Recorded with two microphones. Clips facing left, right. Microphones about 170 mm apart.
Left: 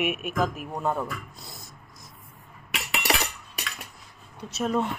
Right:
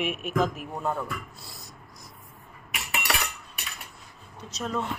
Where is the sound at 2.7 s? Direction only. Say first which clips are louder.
Left 3 dB; 80° left.